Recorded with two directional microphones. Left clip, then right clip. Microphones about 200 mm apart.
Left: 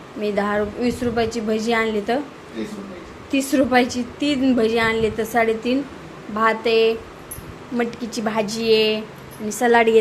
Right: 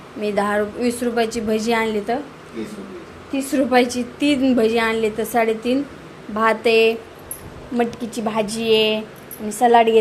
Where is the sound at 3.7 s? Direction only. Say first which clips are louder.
Right 1 dB; 5° right (ahead or behind).